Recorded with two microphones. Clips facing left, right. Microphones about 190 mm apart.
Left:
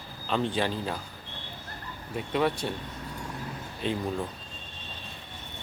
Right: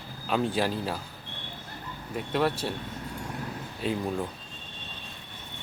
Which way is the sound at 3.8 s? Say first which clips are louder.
Right 1 dB; 5° right (ahead or behind).